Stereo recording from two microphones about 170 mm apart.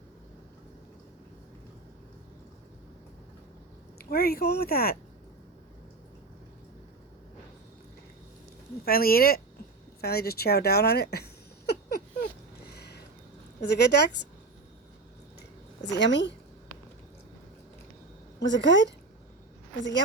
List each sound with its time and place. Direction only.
3.9 s speech: 65° left (ahead or behind)
8.8 s speech: 60° left (ahead or behind)
10.0 s a sound: 65° left (ahead or behind)
13.6 s a woman's voice: 80° left
15.8 s a woman's voice: 90° left
18.3 s a woman's voice: 90° left